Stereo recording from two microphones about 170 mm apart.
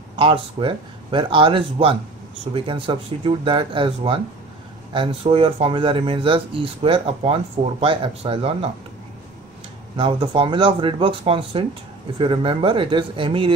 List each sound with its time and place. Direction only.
0.1 s speech: 30° right (ahead or behind)
9.9 s speech: 30° right (ahead or behind)